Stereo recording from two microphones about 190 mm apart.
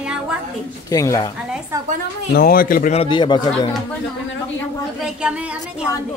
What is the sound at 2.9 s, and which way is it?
Speech, 25° left (ahead or behind).